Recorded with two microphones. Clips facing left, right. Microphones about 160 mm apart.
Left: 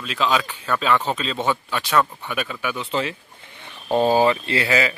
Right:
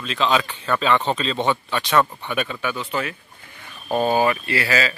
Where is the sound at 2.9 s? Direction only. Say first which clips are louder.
Left 2 dB; 25° left (ahead or behind).